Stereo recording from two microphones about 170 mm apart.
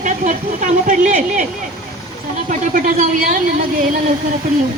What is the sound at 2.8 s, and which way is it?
Speech, 55° right (ahead or behind).